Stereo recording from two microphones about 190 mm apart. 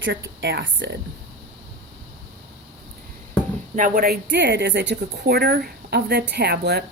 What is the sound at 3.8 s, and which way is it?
Speech, 45° right (ahead or behind).